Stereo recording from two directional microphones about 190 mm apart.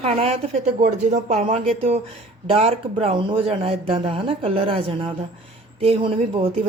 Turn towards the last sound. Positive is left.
turn(degrees=-30)  # may be behind; listen again after turning